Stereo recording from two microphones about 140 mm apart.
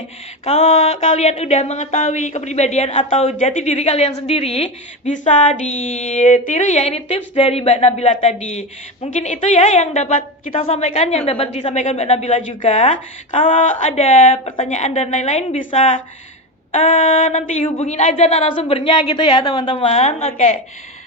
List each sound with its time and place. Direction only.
0.4 s speech: 45° left (ahead or behind)
5.1 s speech: 65° left (ahead or behind)
10.5 s speech: 45° left (ahead or behind)
13.5 s speech: 65° left (ahead or behind)
13.9 s speech: 50° left (ahead or behind)